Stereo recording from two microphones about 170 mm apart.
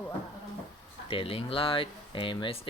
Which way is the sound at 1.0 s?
35° left (ahead or behind).